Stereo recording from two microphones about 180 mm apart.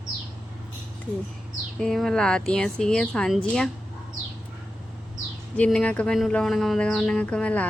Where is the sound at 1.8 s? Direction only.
5° left (ahead or behind).